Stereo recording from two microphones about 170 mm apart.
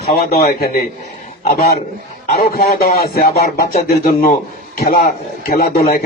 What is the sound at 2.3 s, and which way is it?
A man's voice, 65° left (ahead or behind).